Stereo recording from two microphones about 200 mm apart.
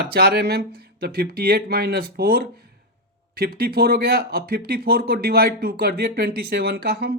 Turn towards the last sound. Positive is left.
turn(degrees=-55)  # may be behind; listen again after turning